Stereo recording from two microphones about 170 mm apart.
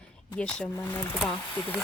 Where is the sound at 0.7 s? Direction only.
20° left (ahead or behind).